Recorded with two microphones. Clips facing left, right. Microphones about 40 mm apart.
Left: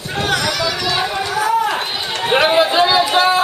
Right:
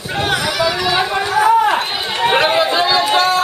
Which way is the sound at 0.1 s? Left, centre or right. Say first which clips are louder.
Right 1 dB; centre.